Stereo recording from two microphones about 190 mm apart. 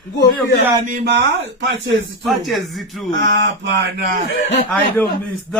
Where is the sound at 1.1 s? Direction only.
70° right (ahead or behind).